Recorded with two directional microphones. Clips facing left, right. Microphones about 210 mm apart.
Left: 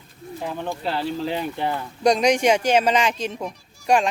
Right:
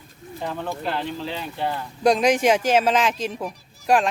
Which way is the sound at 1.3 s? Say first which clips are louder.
Left 3 dB; 55° left (ahead or behind).